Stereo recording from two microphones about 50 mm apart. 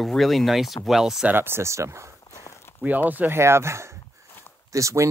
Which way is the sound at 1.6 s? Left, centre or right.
Right.